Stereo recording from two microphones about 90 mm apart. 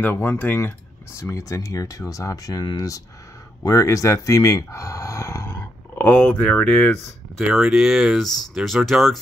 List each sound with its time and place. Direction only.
0.0 s speech: 25° left (ahead or behind); by 3.0 s 45° left (ahead or behind)
3.6 s a sound: 35° left (ahead or behind)
6.1 s speech: 10° left (ahead or behind)
7.3 s speech: 5° right (ahead or behind)